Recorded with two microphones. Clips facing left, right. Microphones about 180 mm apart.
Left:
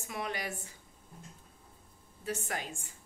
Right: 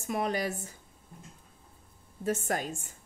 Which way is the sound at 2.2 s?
45° right (ahead or behind).